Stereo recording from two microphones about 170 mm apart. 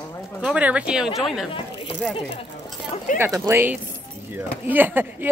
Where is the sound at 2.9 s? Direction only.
50° left (ahead or behind).